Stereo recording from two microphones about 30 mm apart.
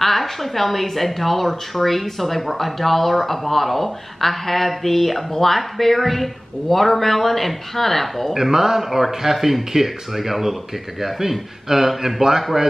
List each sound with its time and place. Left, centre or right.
0.0 s a woman's voice: centre
8.3 s speech: centre